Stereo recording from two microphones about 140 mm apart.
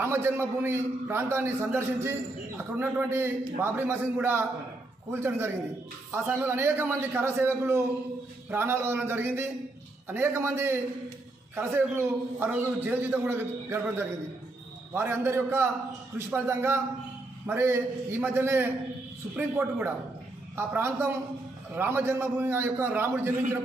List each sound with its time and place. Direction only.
0.0 s a man's voice: 15° right (ahead or behind)
6.1 s a man's voice: 15° right (ahead or behind)